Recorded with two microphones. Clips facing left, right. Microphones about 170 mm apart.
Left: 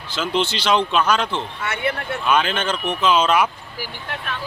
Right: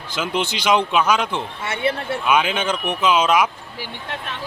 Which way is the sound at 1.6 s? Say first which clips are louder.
Right 3 dB; 30° right (ahead or behind).